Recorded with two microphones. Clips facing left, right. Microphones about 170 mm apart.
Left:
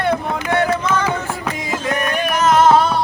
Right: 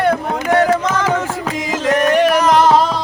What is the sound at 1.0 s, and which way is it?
Music, 90° right.